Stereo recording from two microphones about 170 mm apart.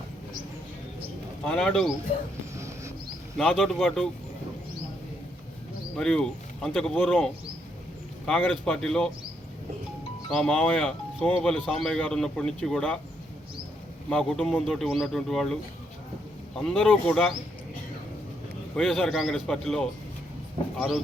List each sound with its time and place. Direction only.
1.5 s speech: 5° left (ahead or behind)
2.6 s a sound: 15° right (ahead or behind)
3.3 s speech: centre (ahead or behind)
6.0 s speech: 5° left (ahead or behind)
8.3 s speech: 5° left (ahead or behind)
10.3 s speech: 5° left (ahead or behind)
14.1 s speech: 5° left (ahead or behind)
16.6 s speech: 5° left (ahead or behind)
18.8 s speech: centre (ahead or behind)